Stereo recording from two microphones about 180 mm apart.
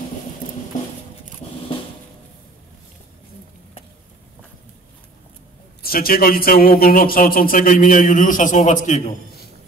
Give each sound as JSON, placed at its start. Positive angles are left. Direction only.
{"t": 5.8, "sound": "a man's voice", "side_deg": 55}